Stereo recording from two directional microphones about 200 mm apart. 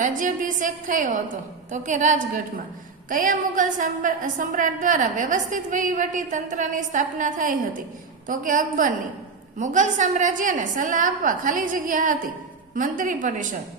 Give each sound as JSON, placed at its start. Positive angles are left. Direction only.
{"t": 0.0, "sound": "a woman's voice", "side_deg": -40}